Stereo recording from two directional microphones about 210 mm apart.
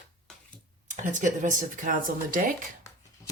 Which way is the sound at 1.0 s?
35° right (ahead or behind).